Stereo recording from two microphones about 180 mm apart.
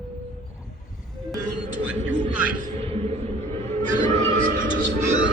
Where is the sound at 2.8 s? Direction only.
35° right (ahead or behind).